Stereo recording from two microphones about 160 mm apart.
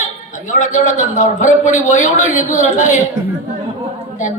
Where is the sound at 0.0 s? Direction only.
50° left (ahead or behind).